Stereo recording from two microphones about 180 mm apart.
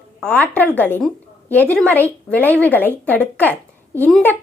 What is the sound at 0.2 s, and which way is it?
A woman's voice, 10° left (ahead or behind).